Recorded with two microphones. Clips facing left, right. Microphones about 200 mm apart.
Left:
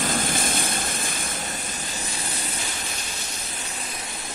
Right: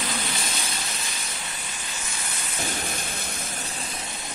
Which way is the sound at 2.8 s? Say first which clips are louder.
Right 3 dB; 55° right (ahead or behind).